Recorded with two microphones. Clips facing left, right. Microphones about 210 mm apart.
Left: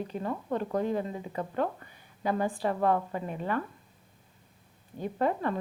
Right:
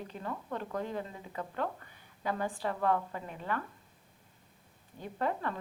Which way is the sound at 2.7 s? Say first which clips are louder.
Left 3 dB; 25° left (ahead or behind).